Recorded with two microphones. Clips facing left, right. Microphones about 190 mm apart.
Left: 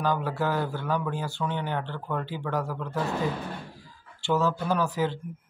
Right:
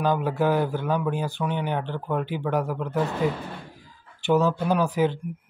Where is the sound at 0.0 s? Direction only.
15° right (ahead or behind).